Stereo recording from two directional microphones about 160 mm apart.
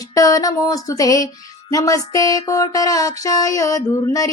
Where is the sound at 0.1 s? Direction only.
20° left (ahead or behind).